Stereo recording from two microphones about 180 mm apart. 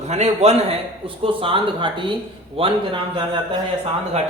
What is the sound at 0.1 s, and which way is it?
Speech, 35° right (ahead or behind).